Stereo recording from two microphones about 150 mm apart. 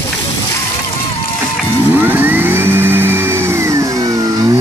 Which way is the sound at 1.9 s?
10° right (ahead or behind).